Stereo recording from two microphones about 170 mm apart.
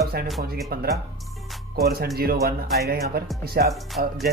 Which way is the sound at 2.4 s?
65° right (ahead or behind).